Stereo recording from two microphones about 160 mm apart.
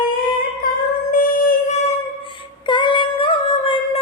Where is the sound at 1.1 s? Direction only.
60° left (ahead or behind).